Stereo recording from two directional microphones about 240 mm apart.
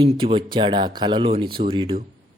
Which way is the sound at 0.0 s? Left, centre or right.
Right.